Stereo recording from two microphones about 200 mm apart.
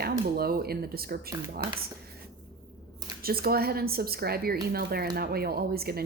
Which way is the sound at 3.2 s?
50° right (ahead or behind).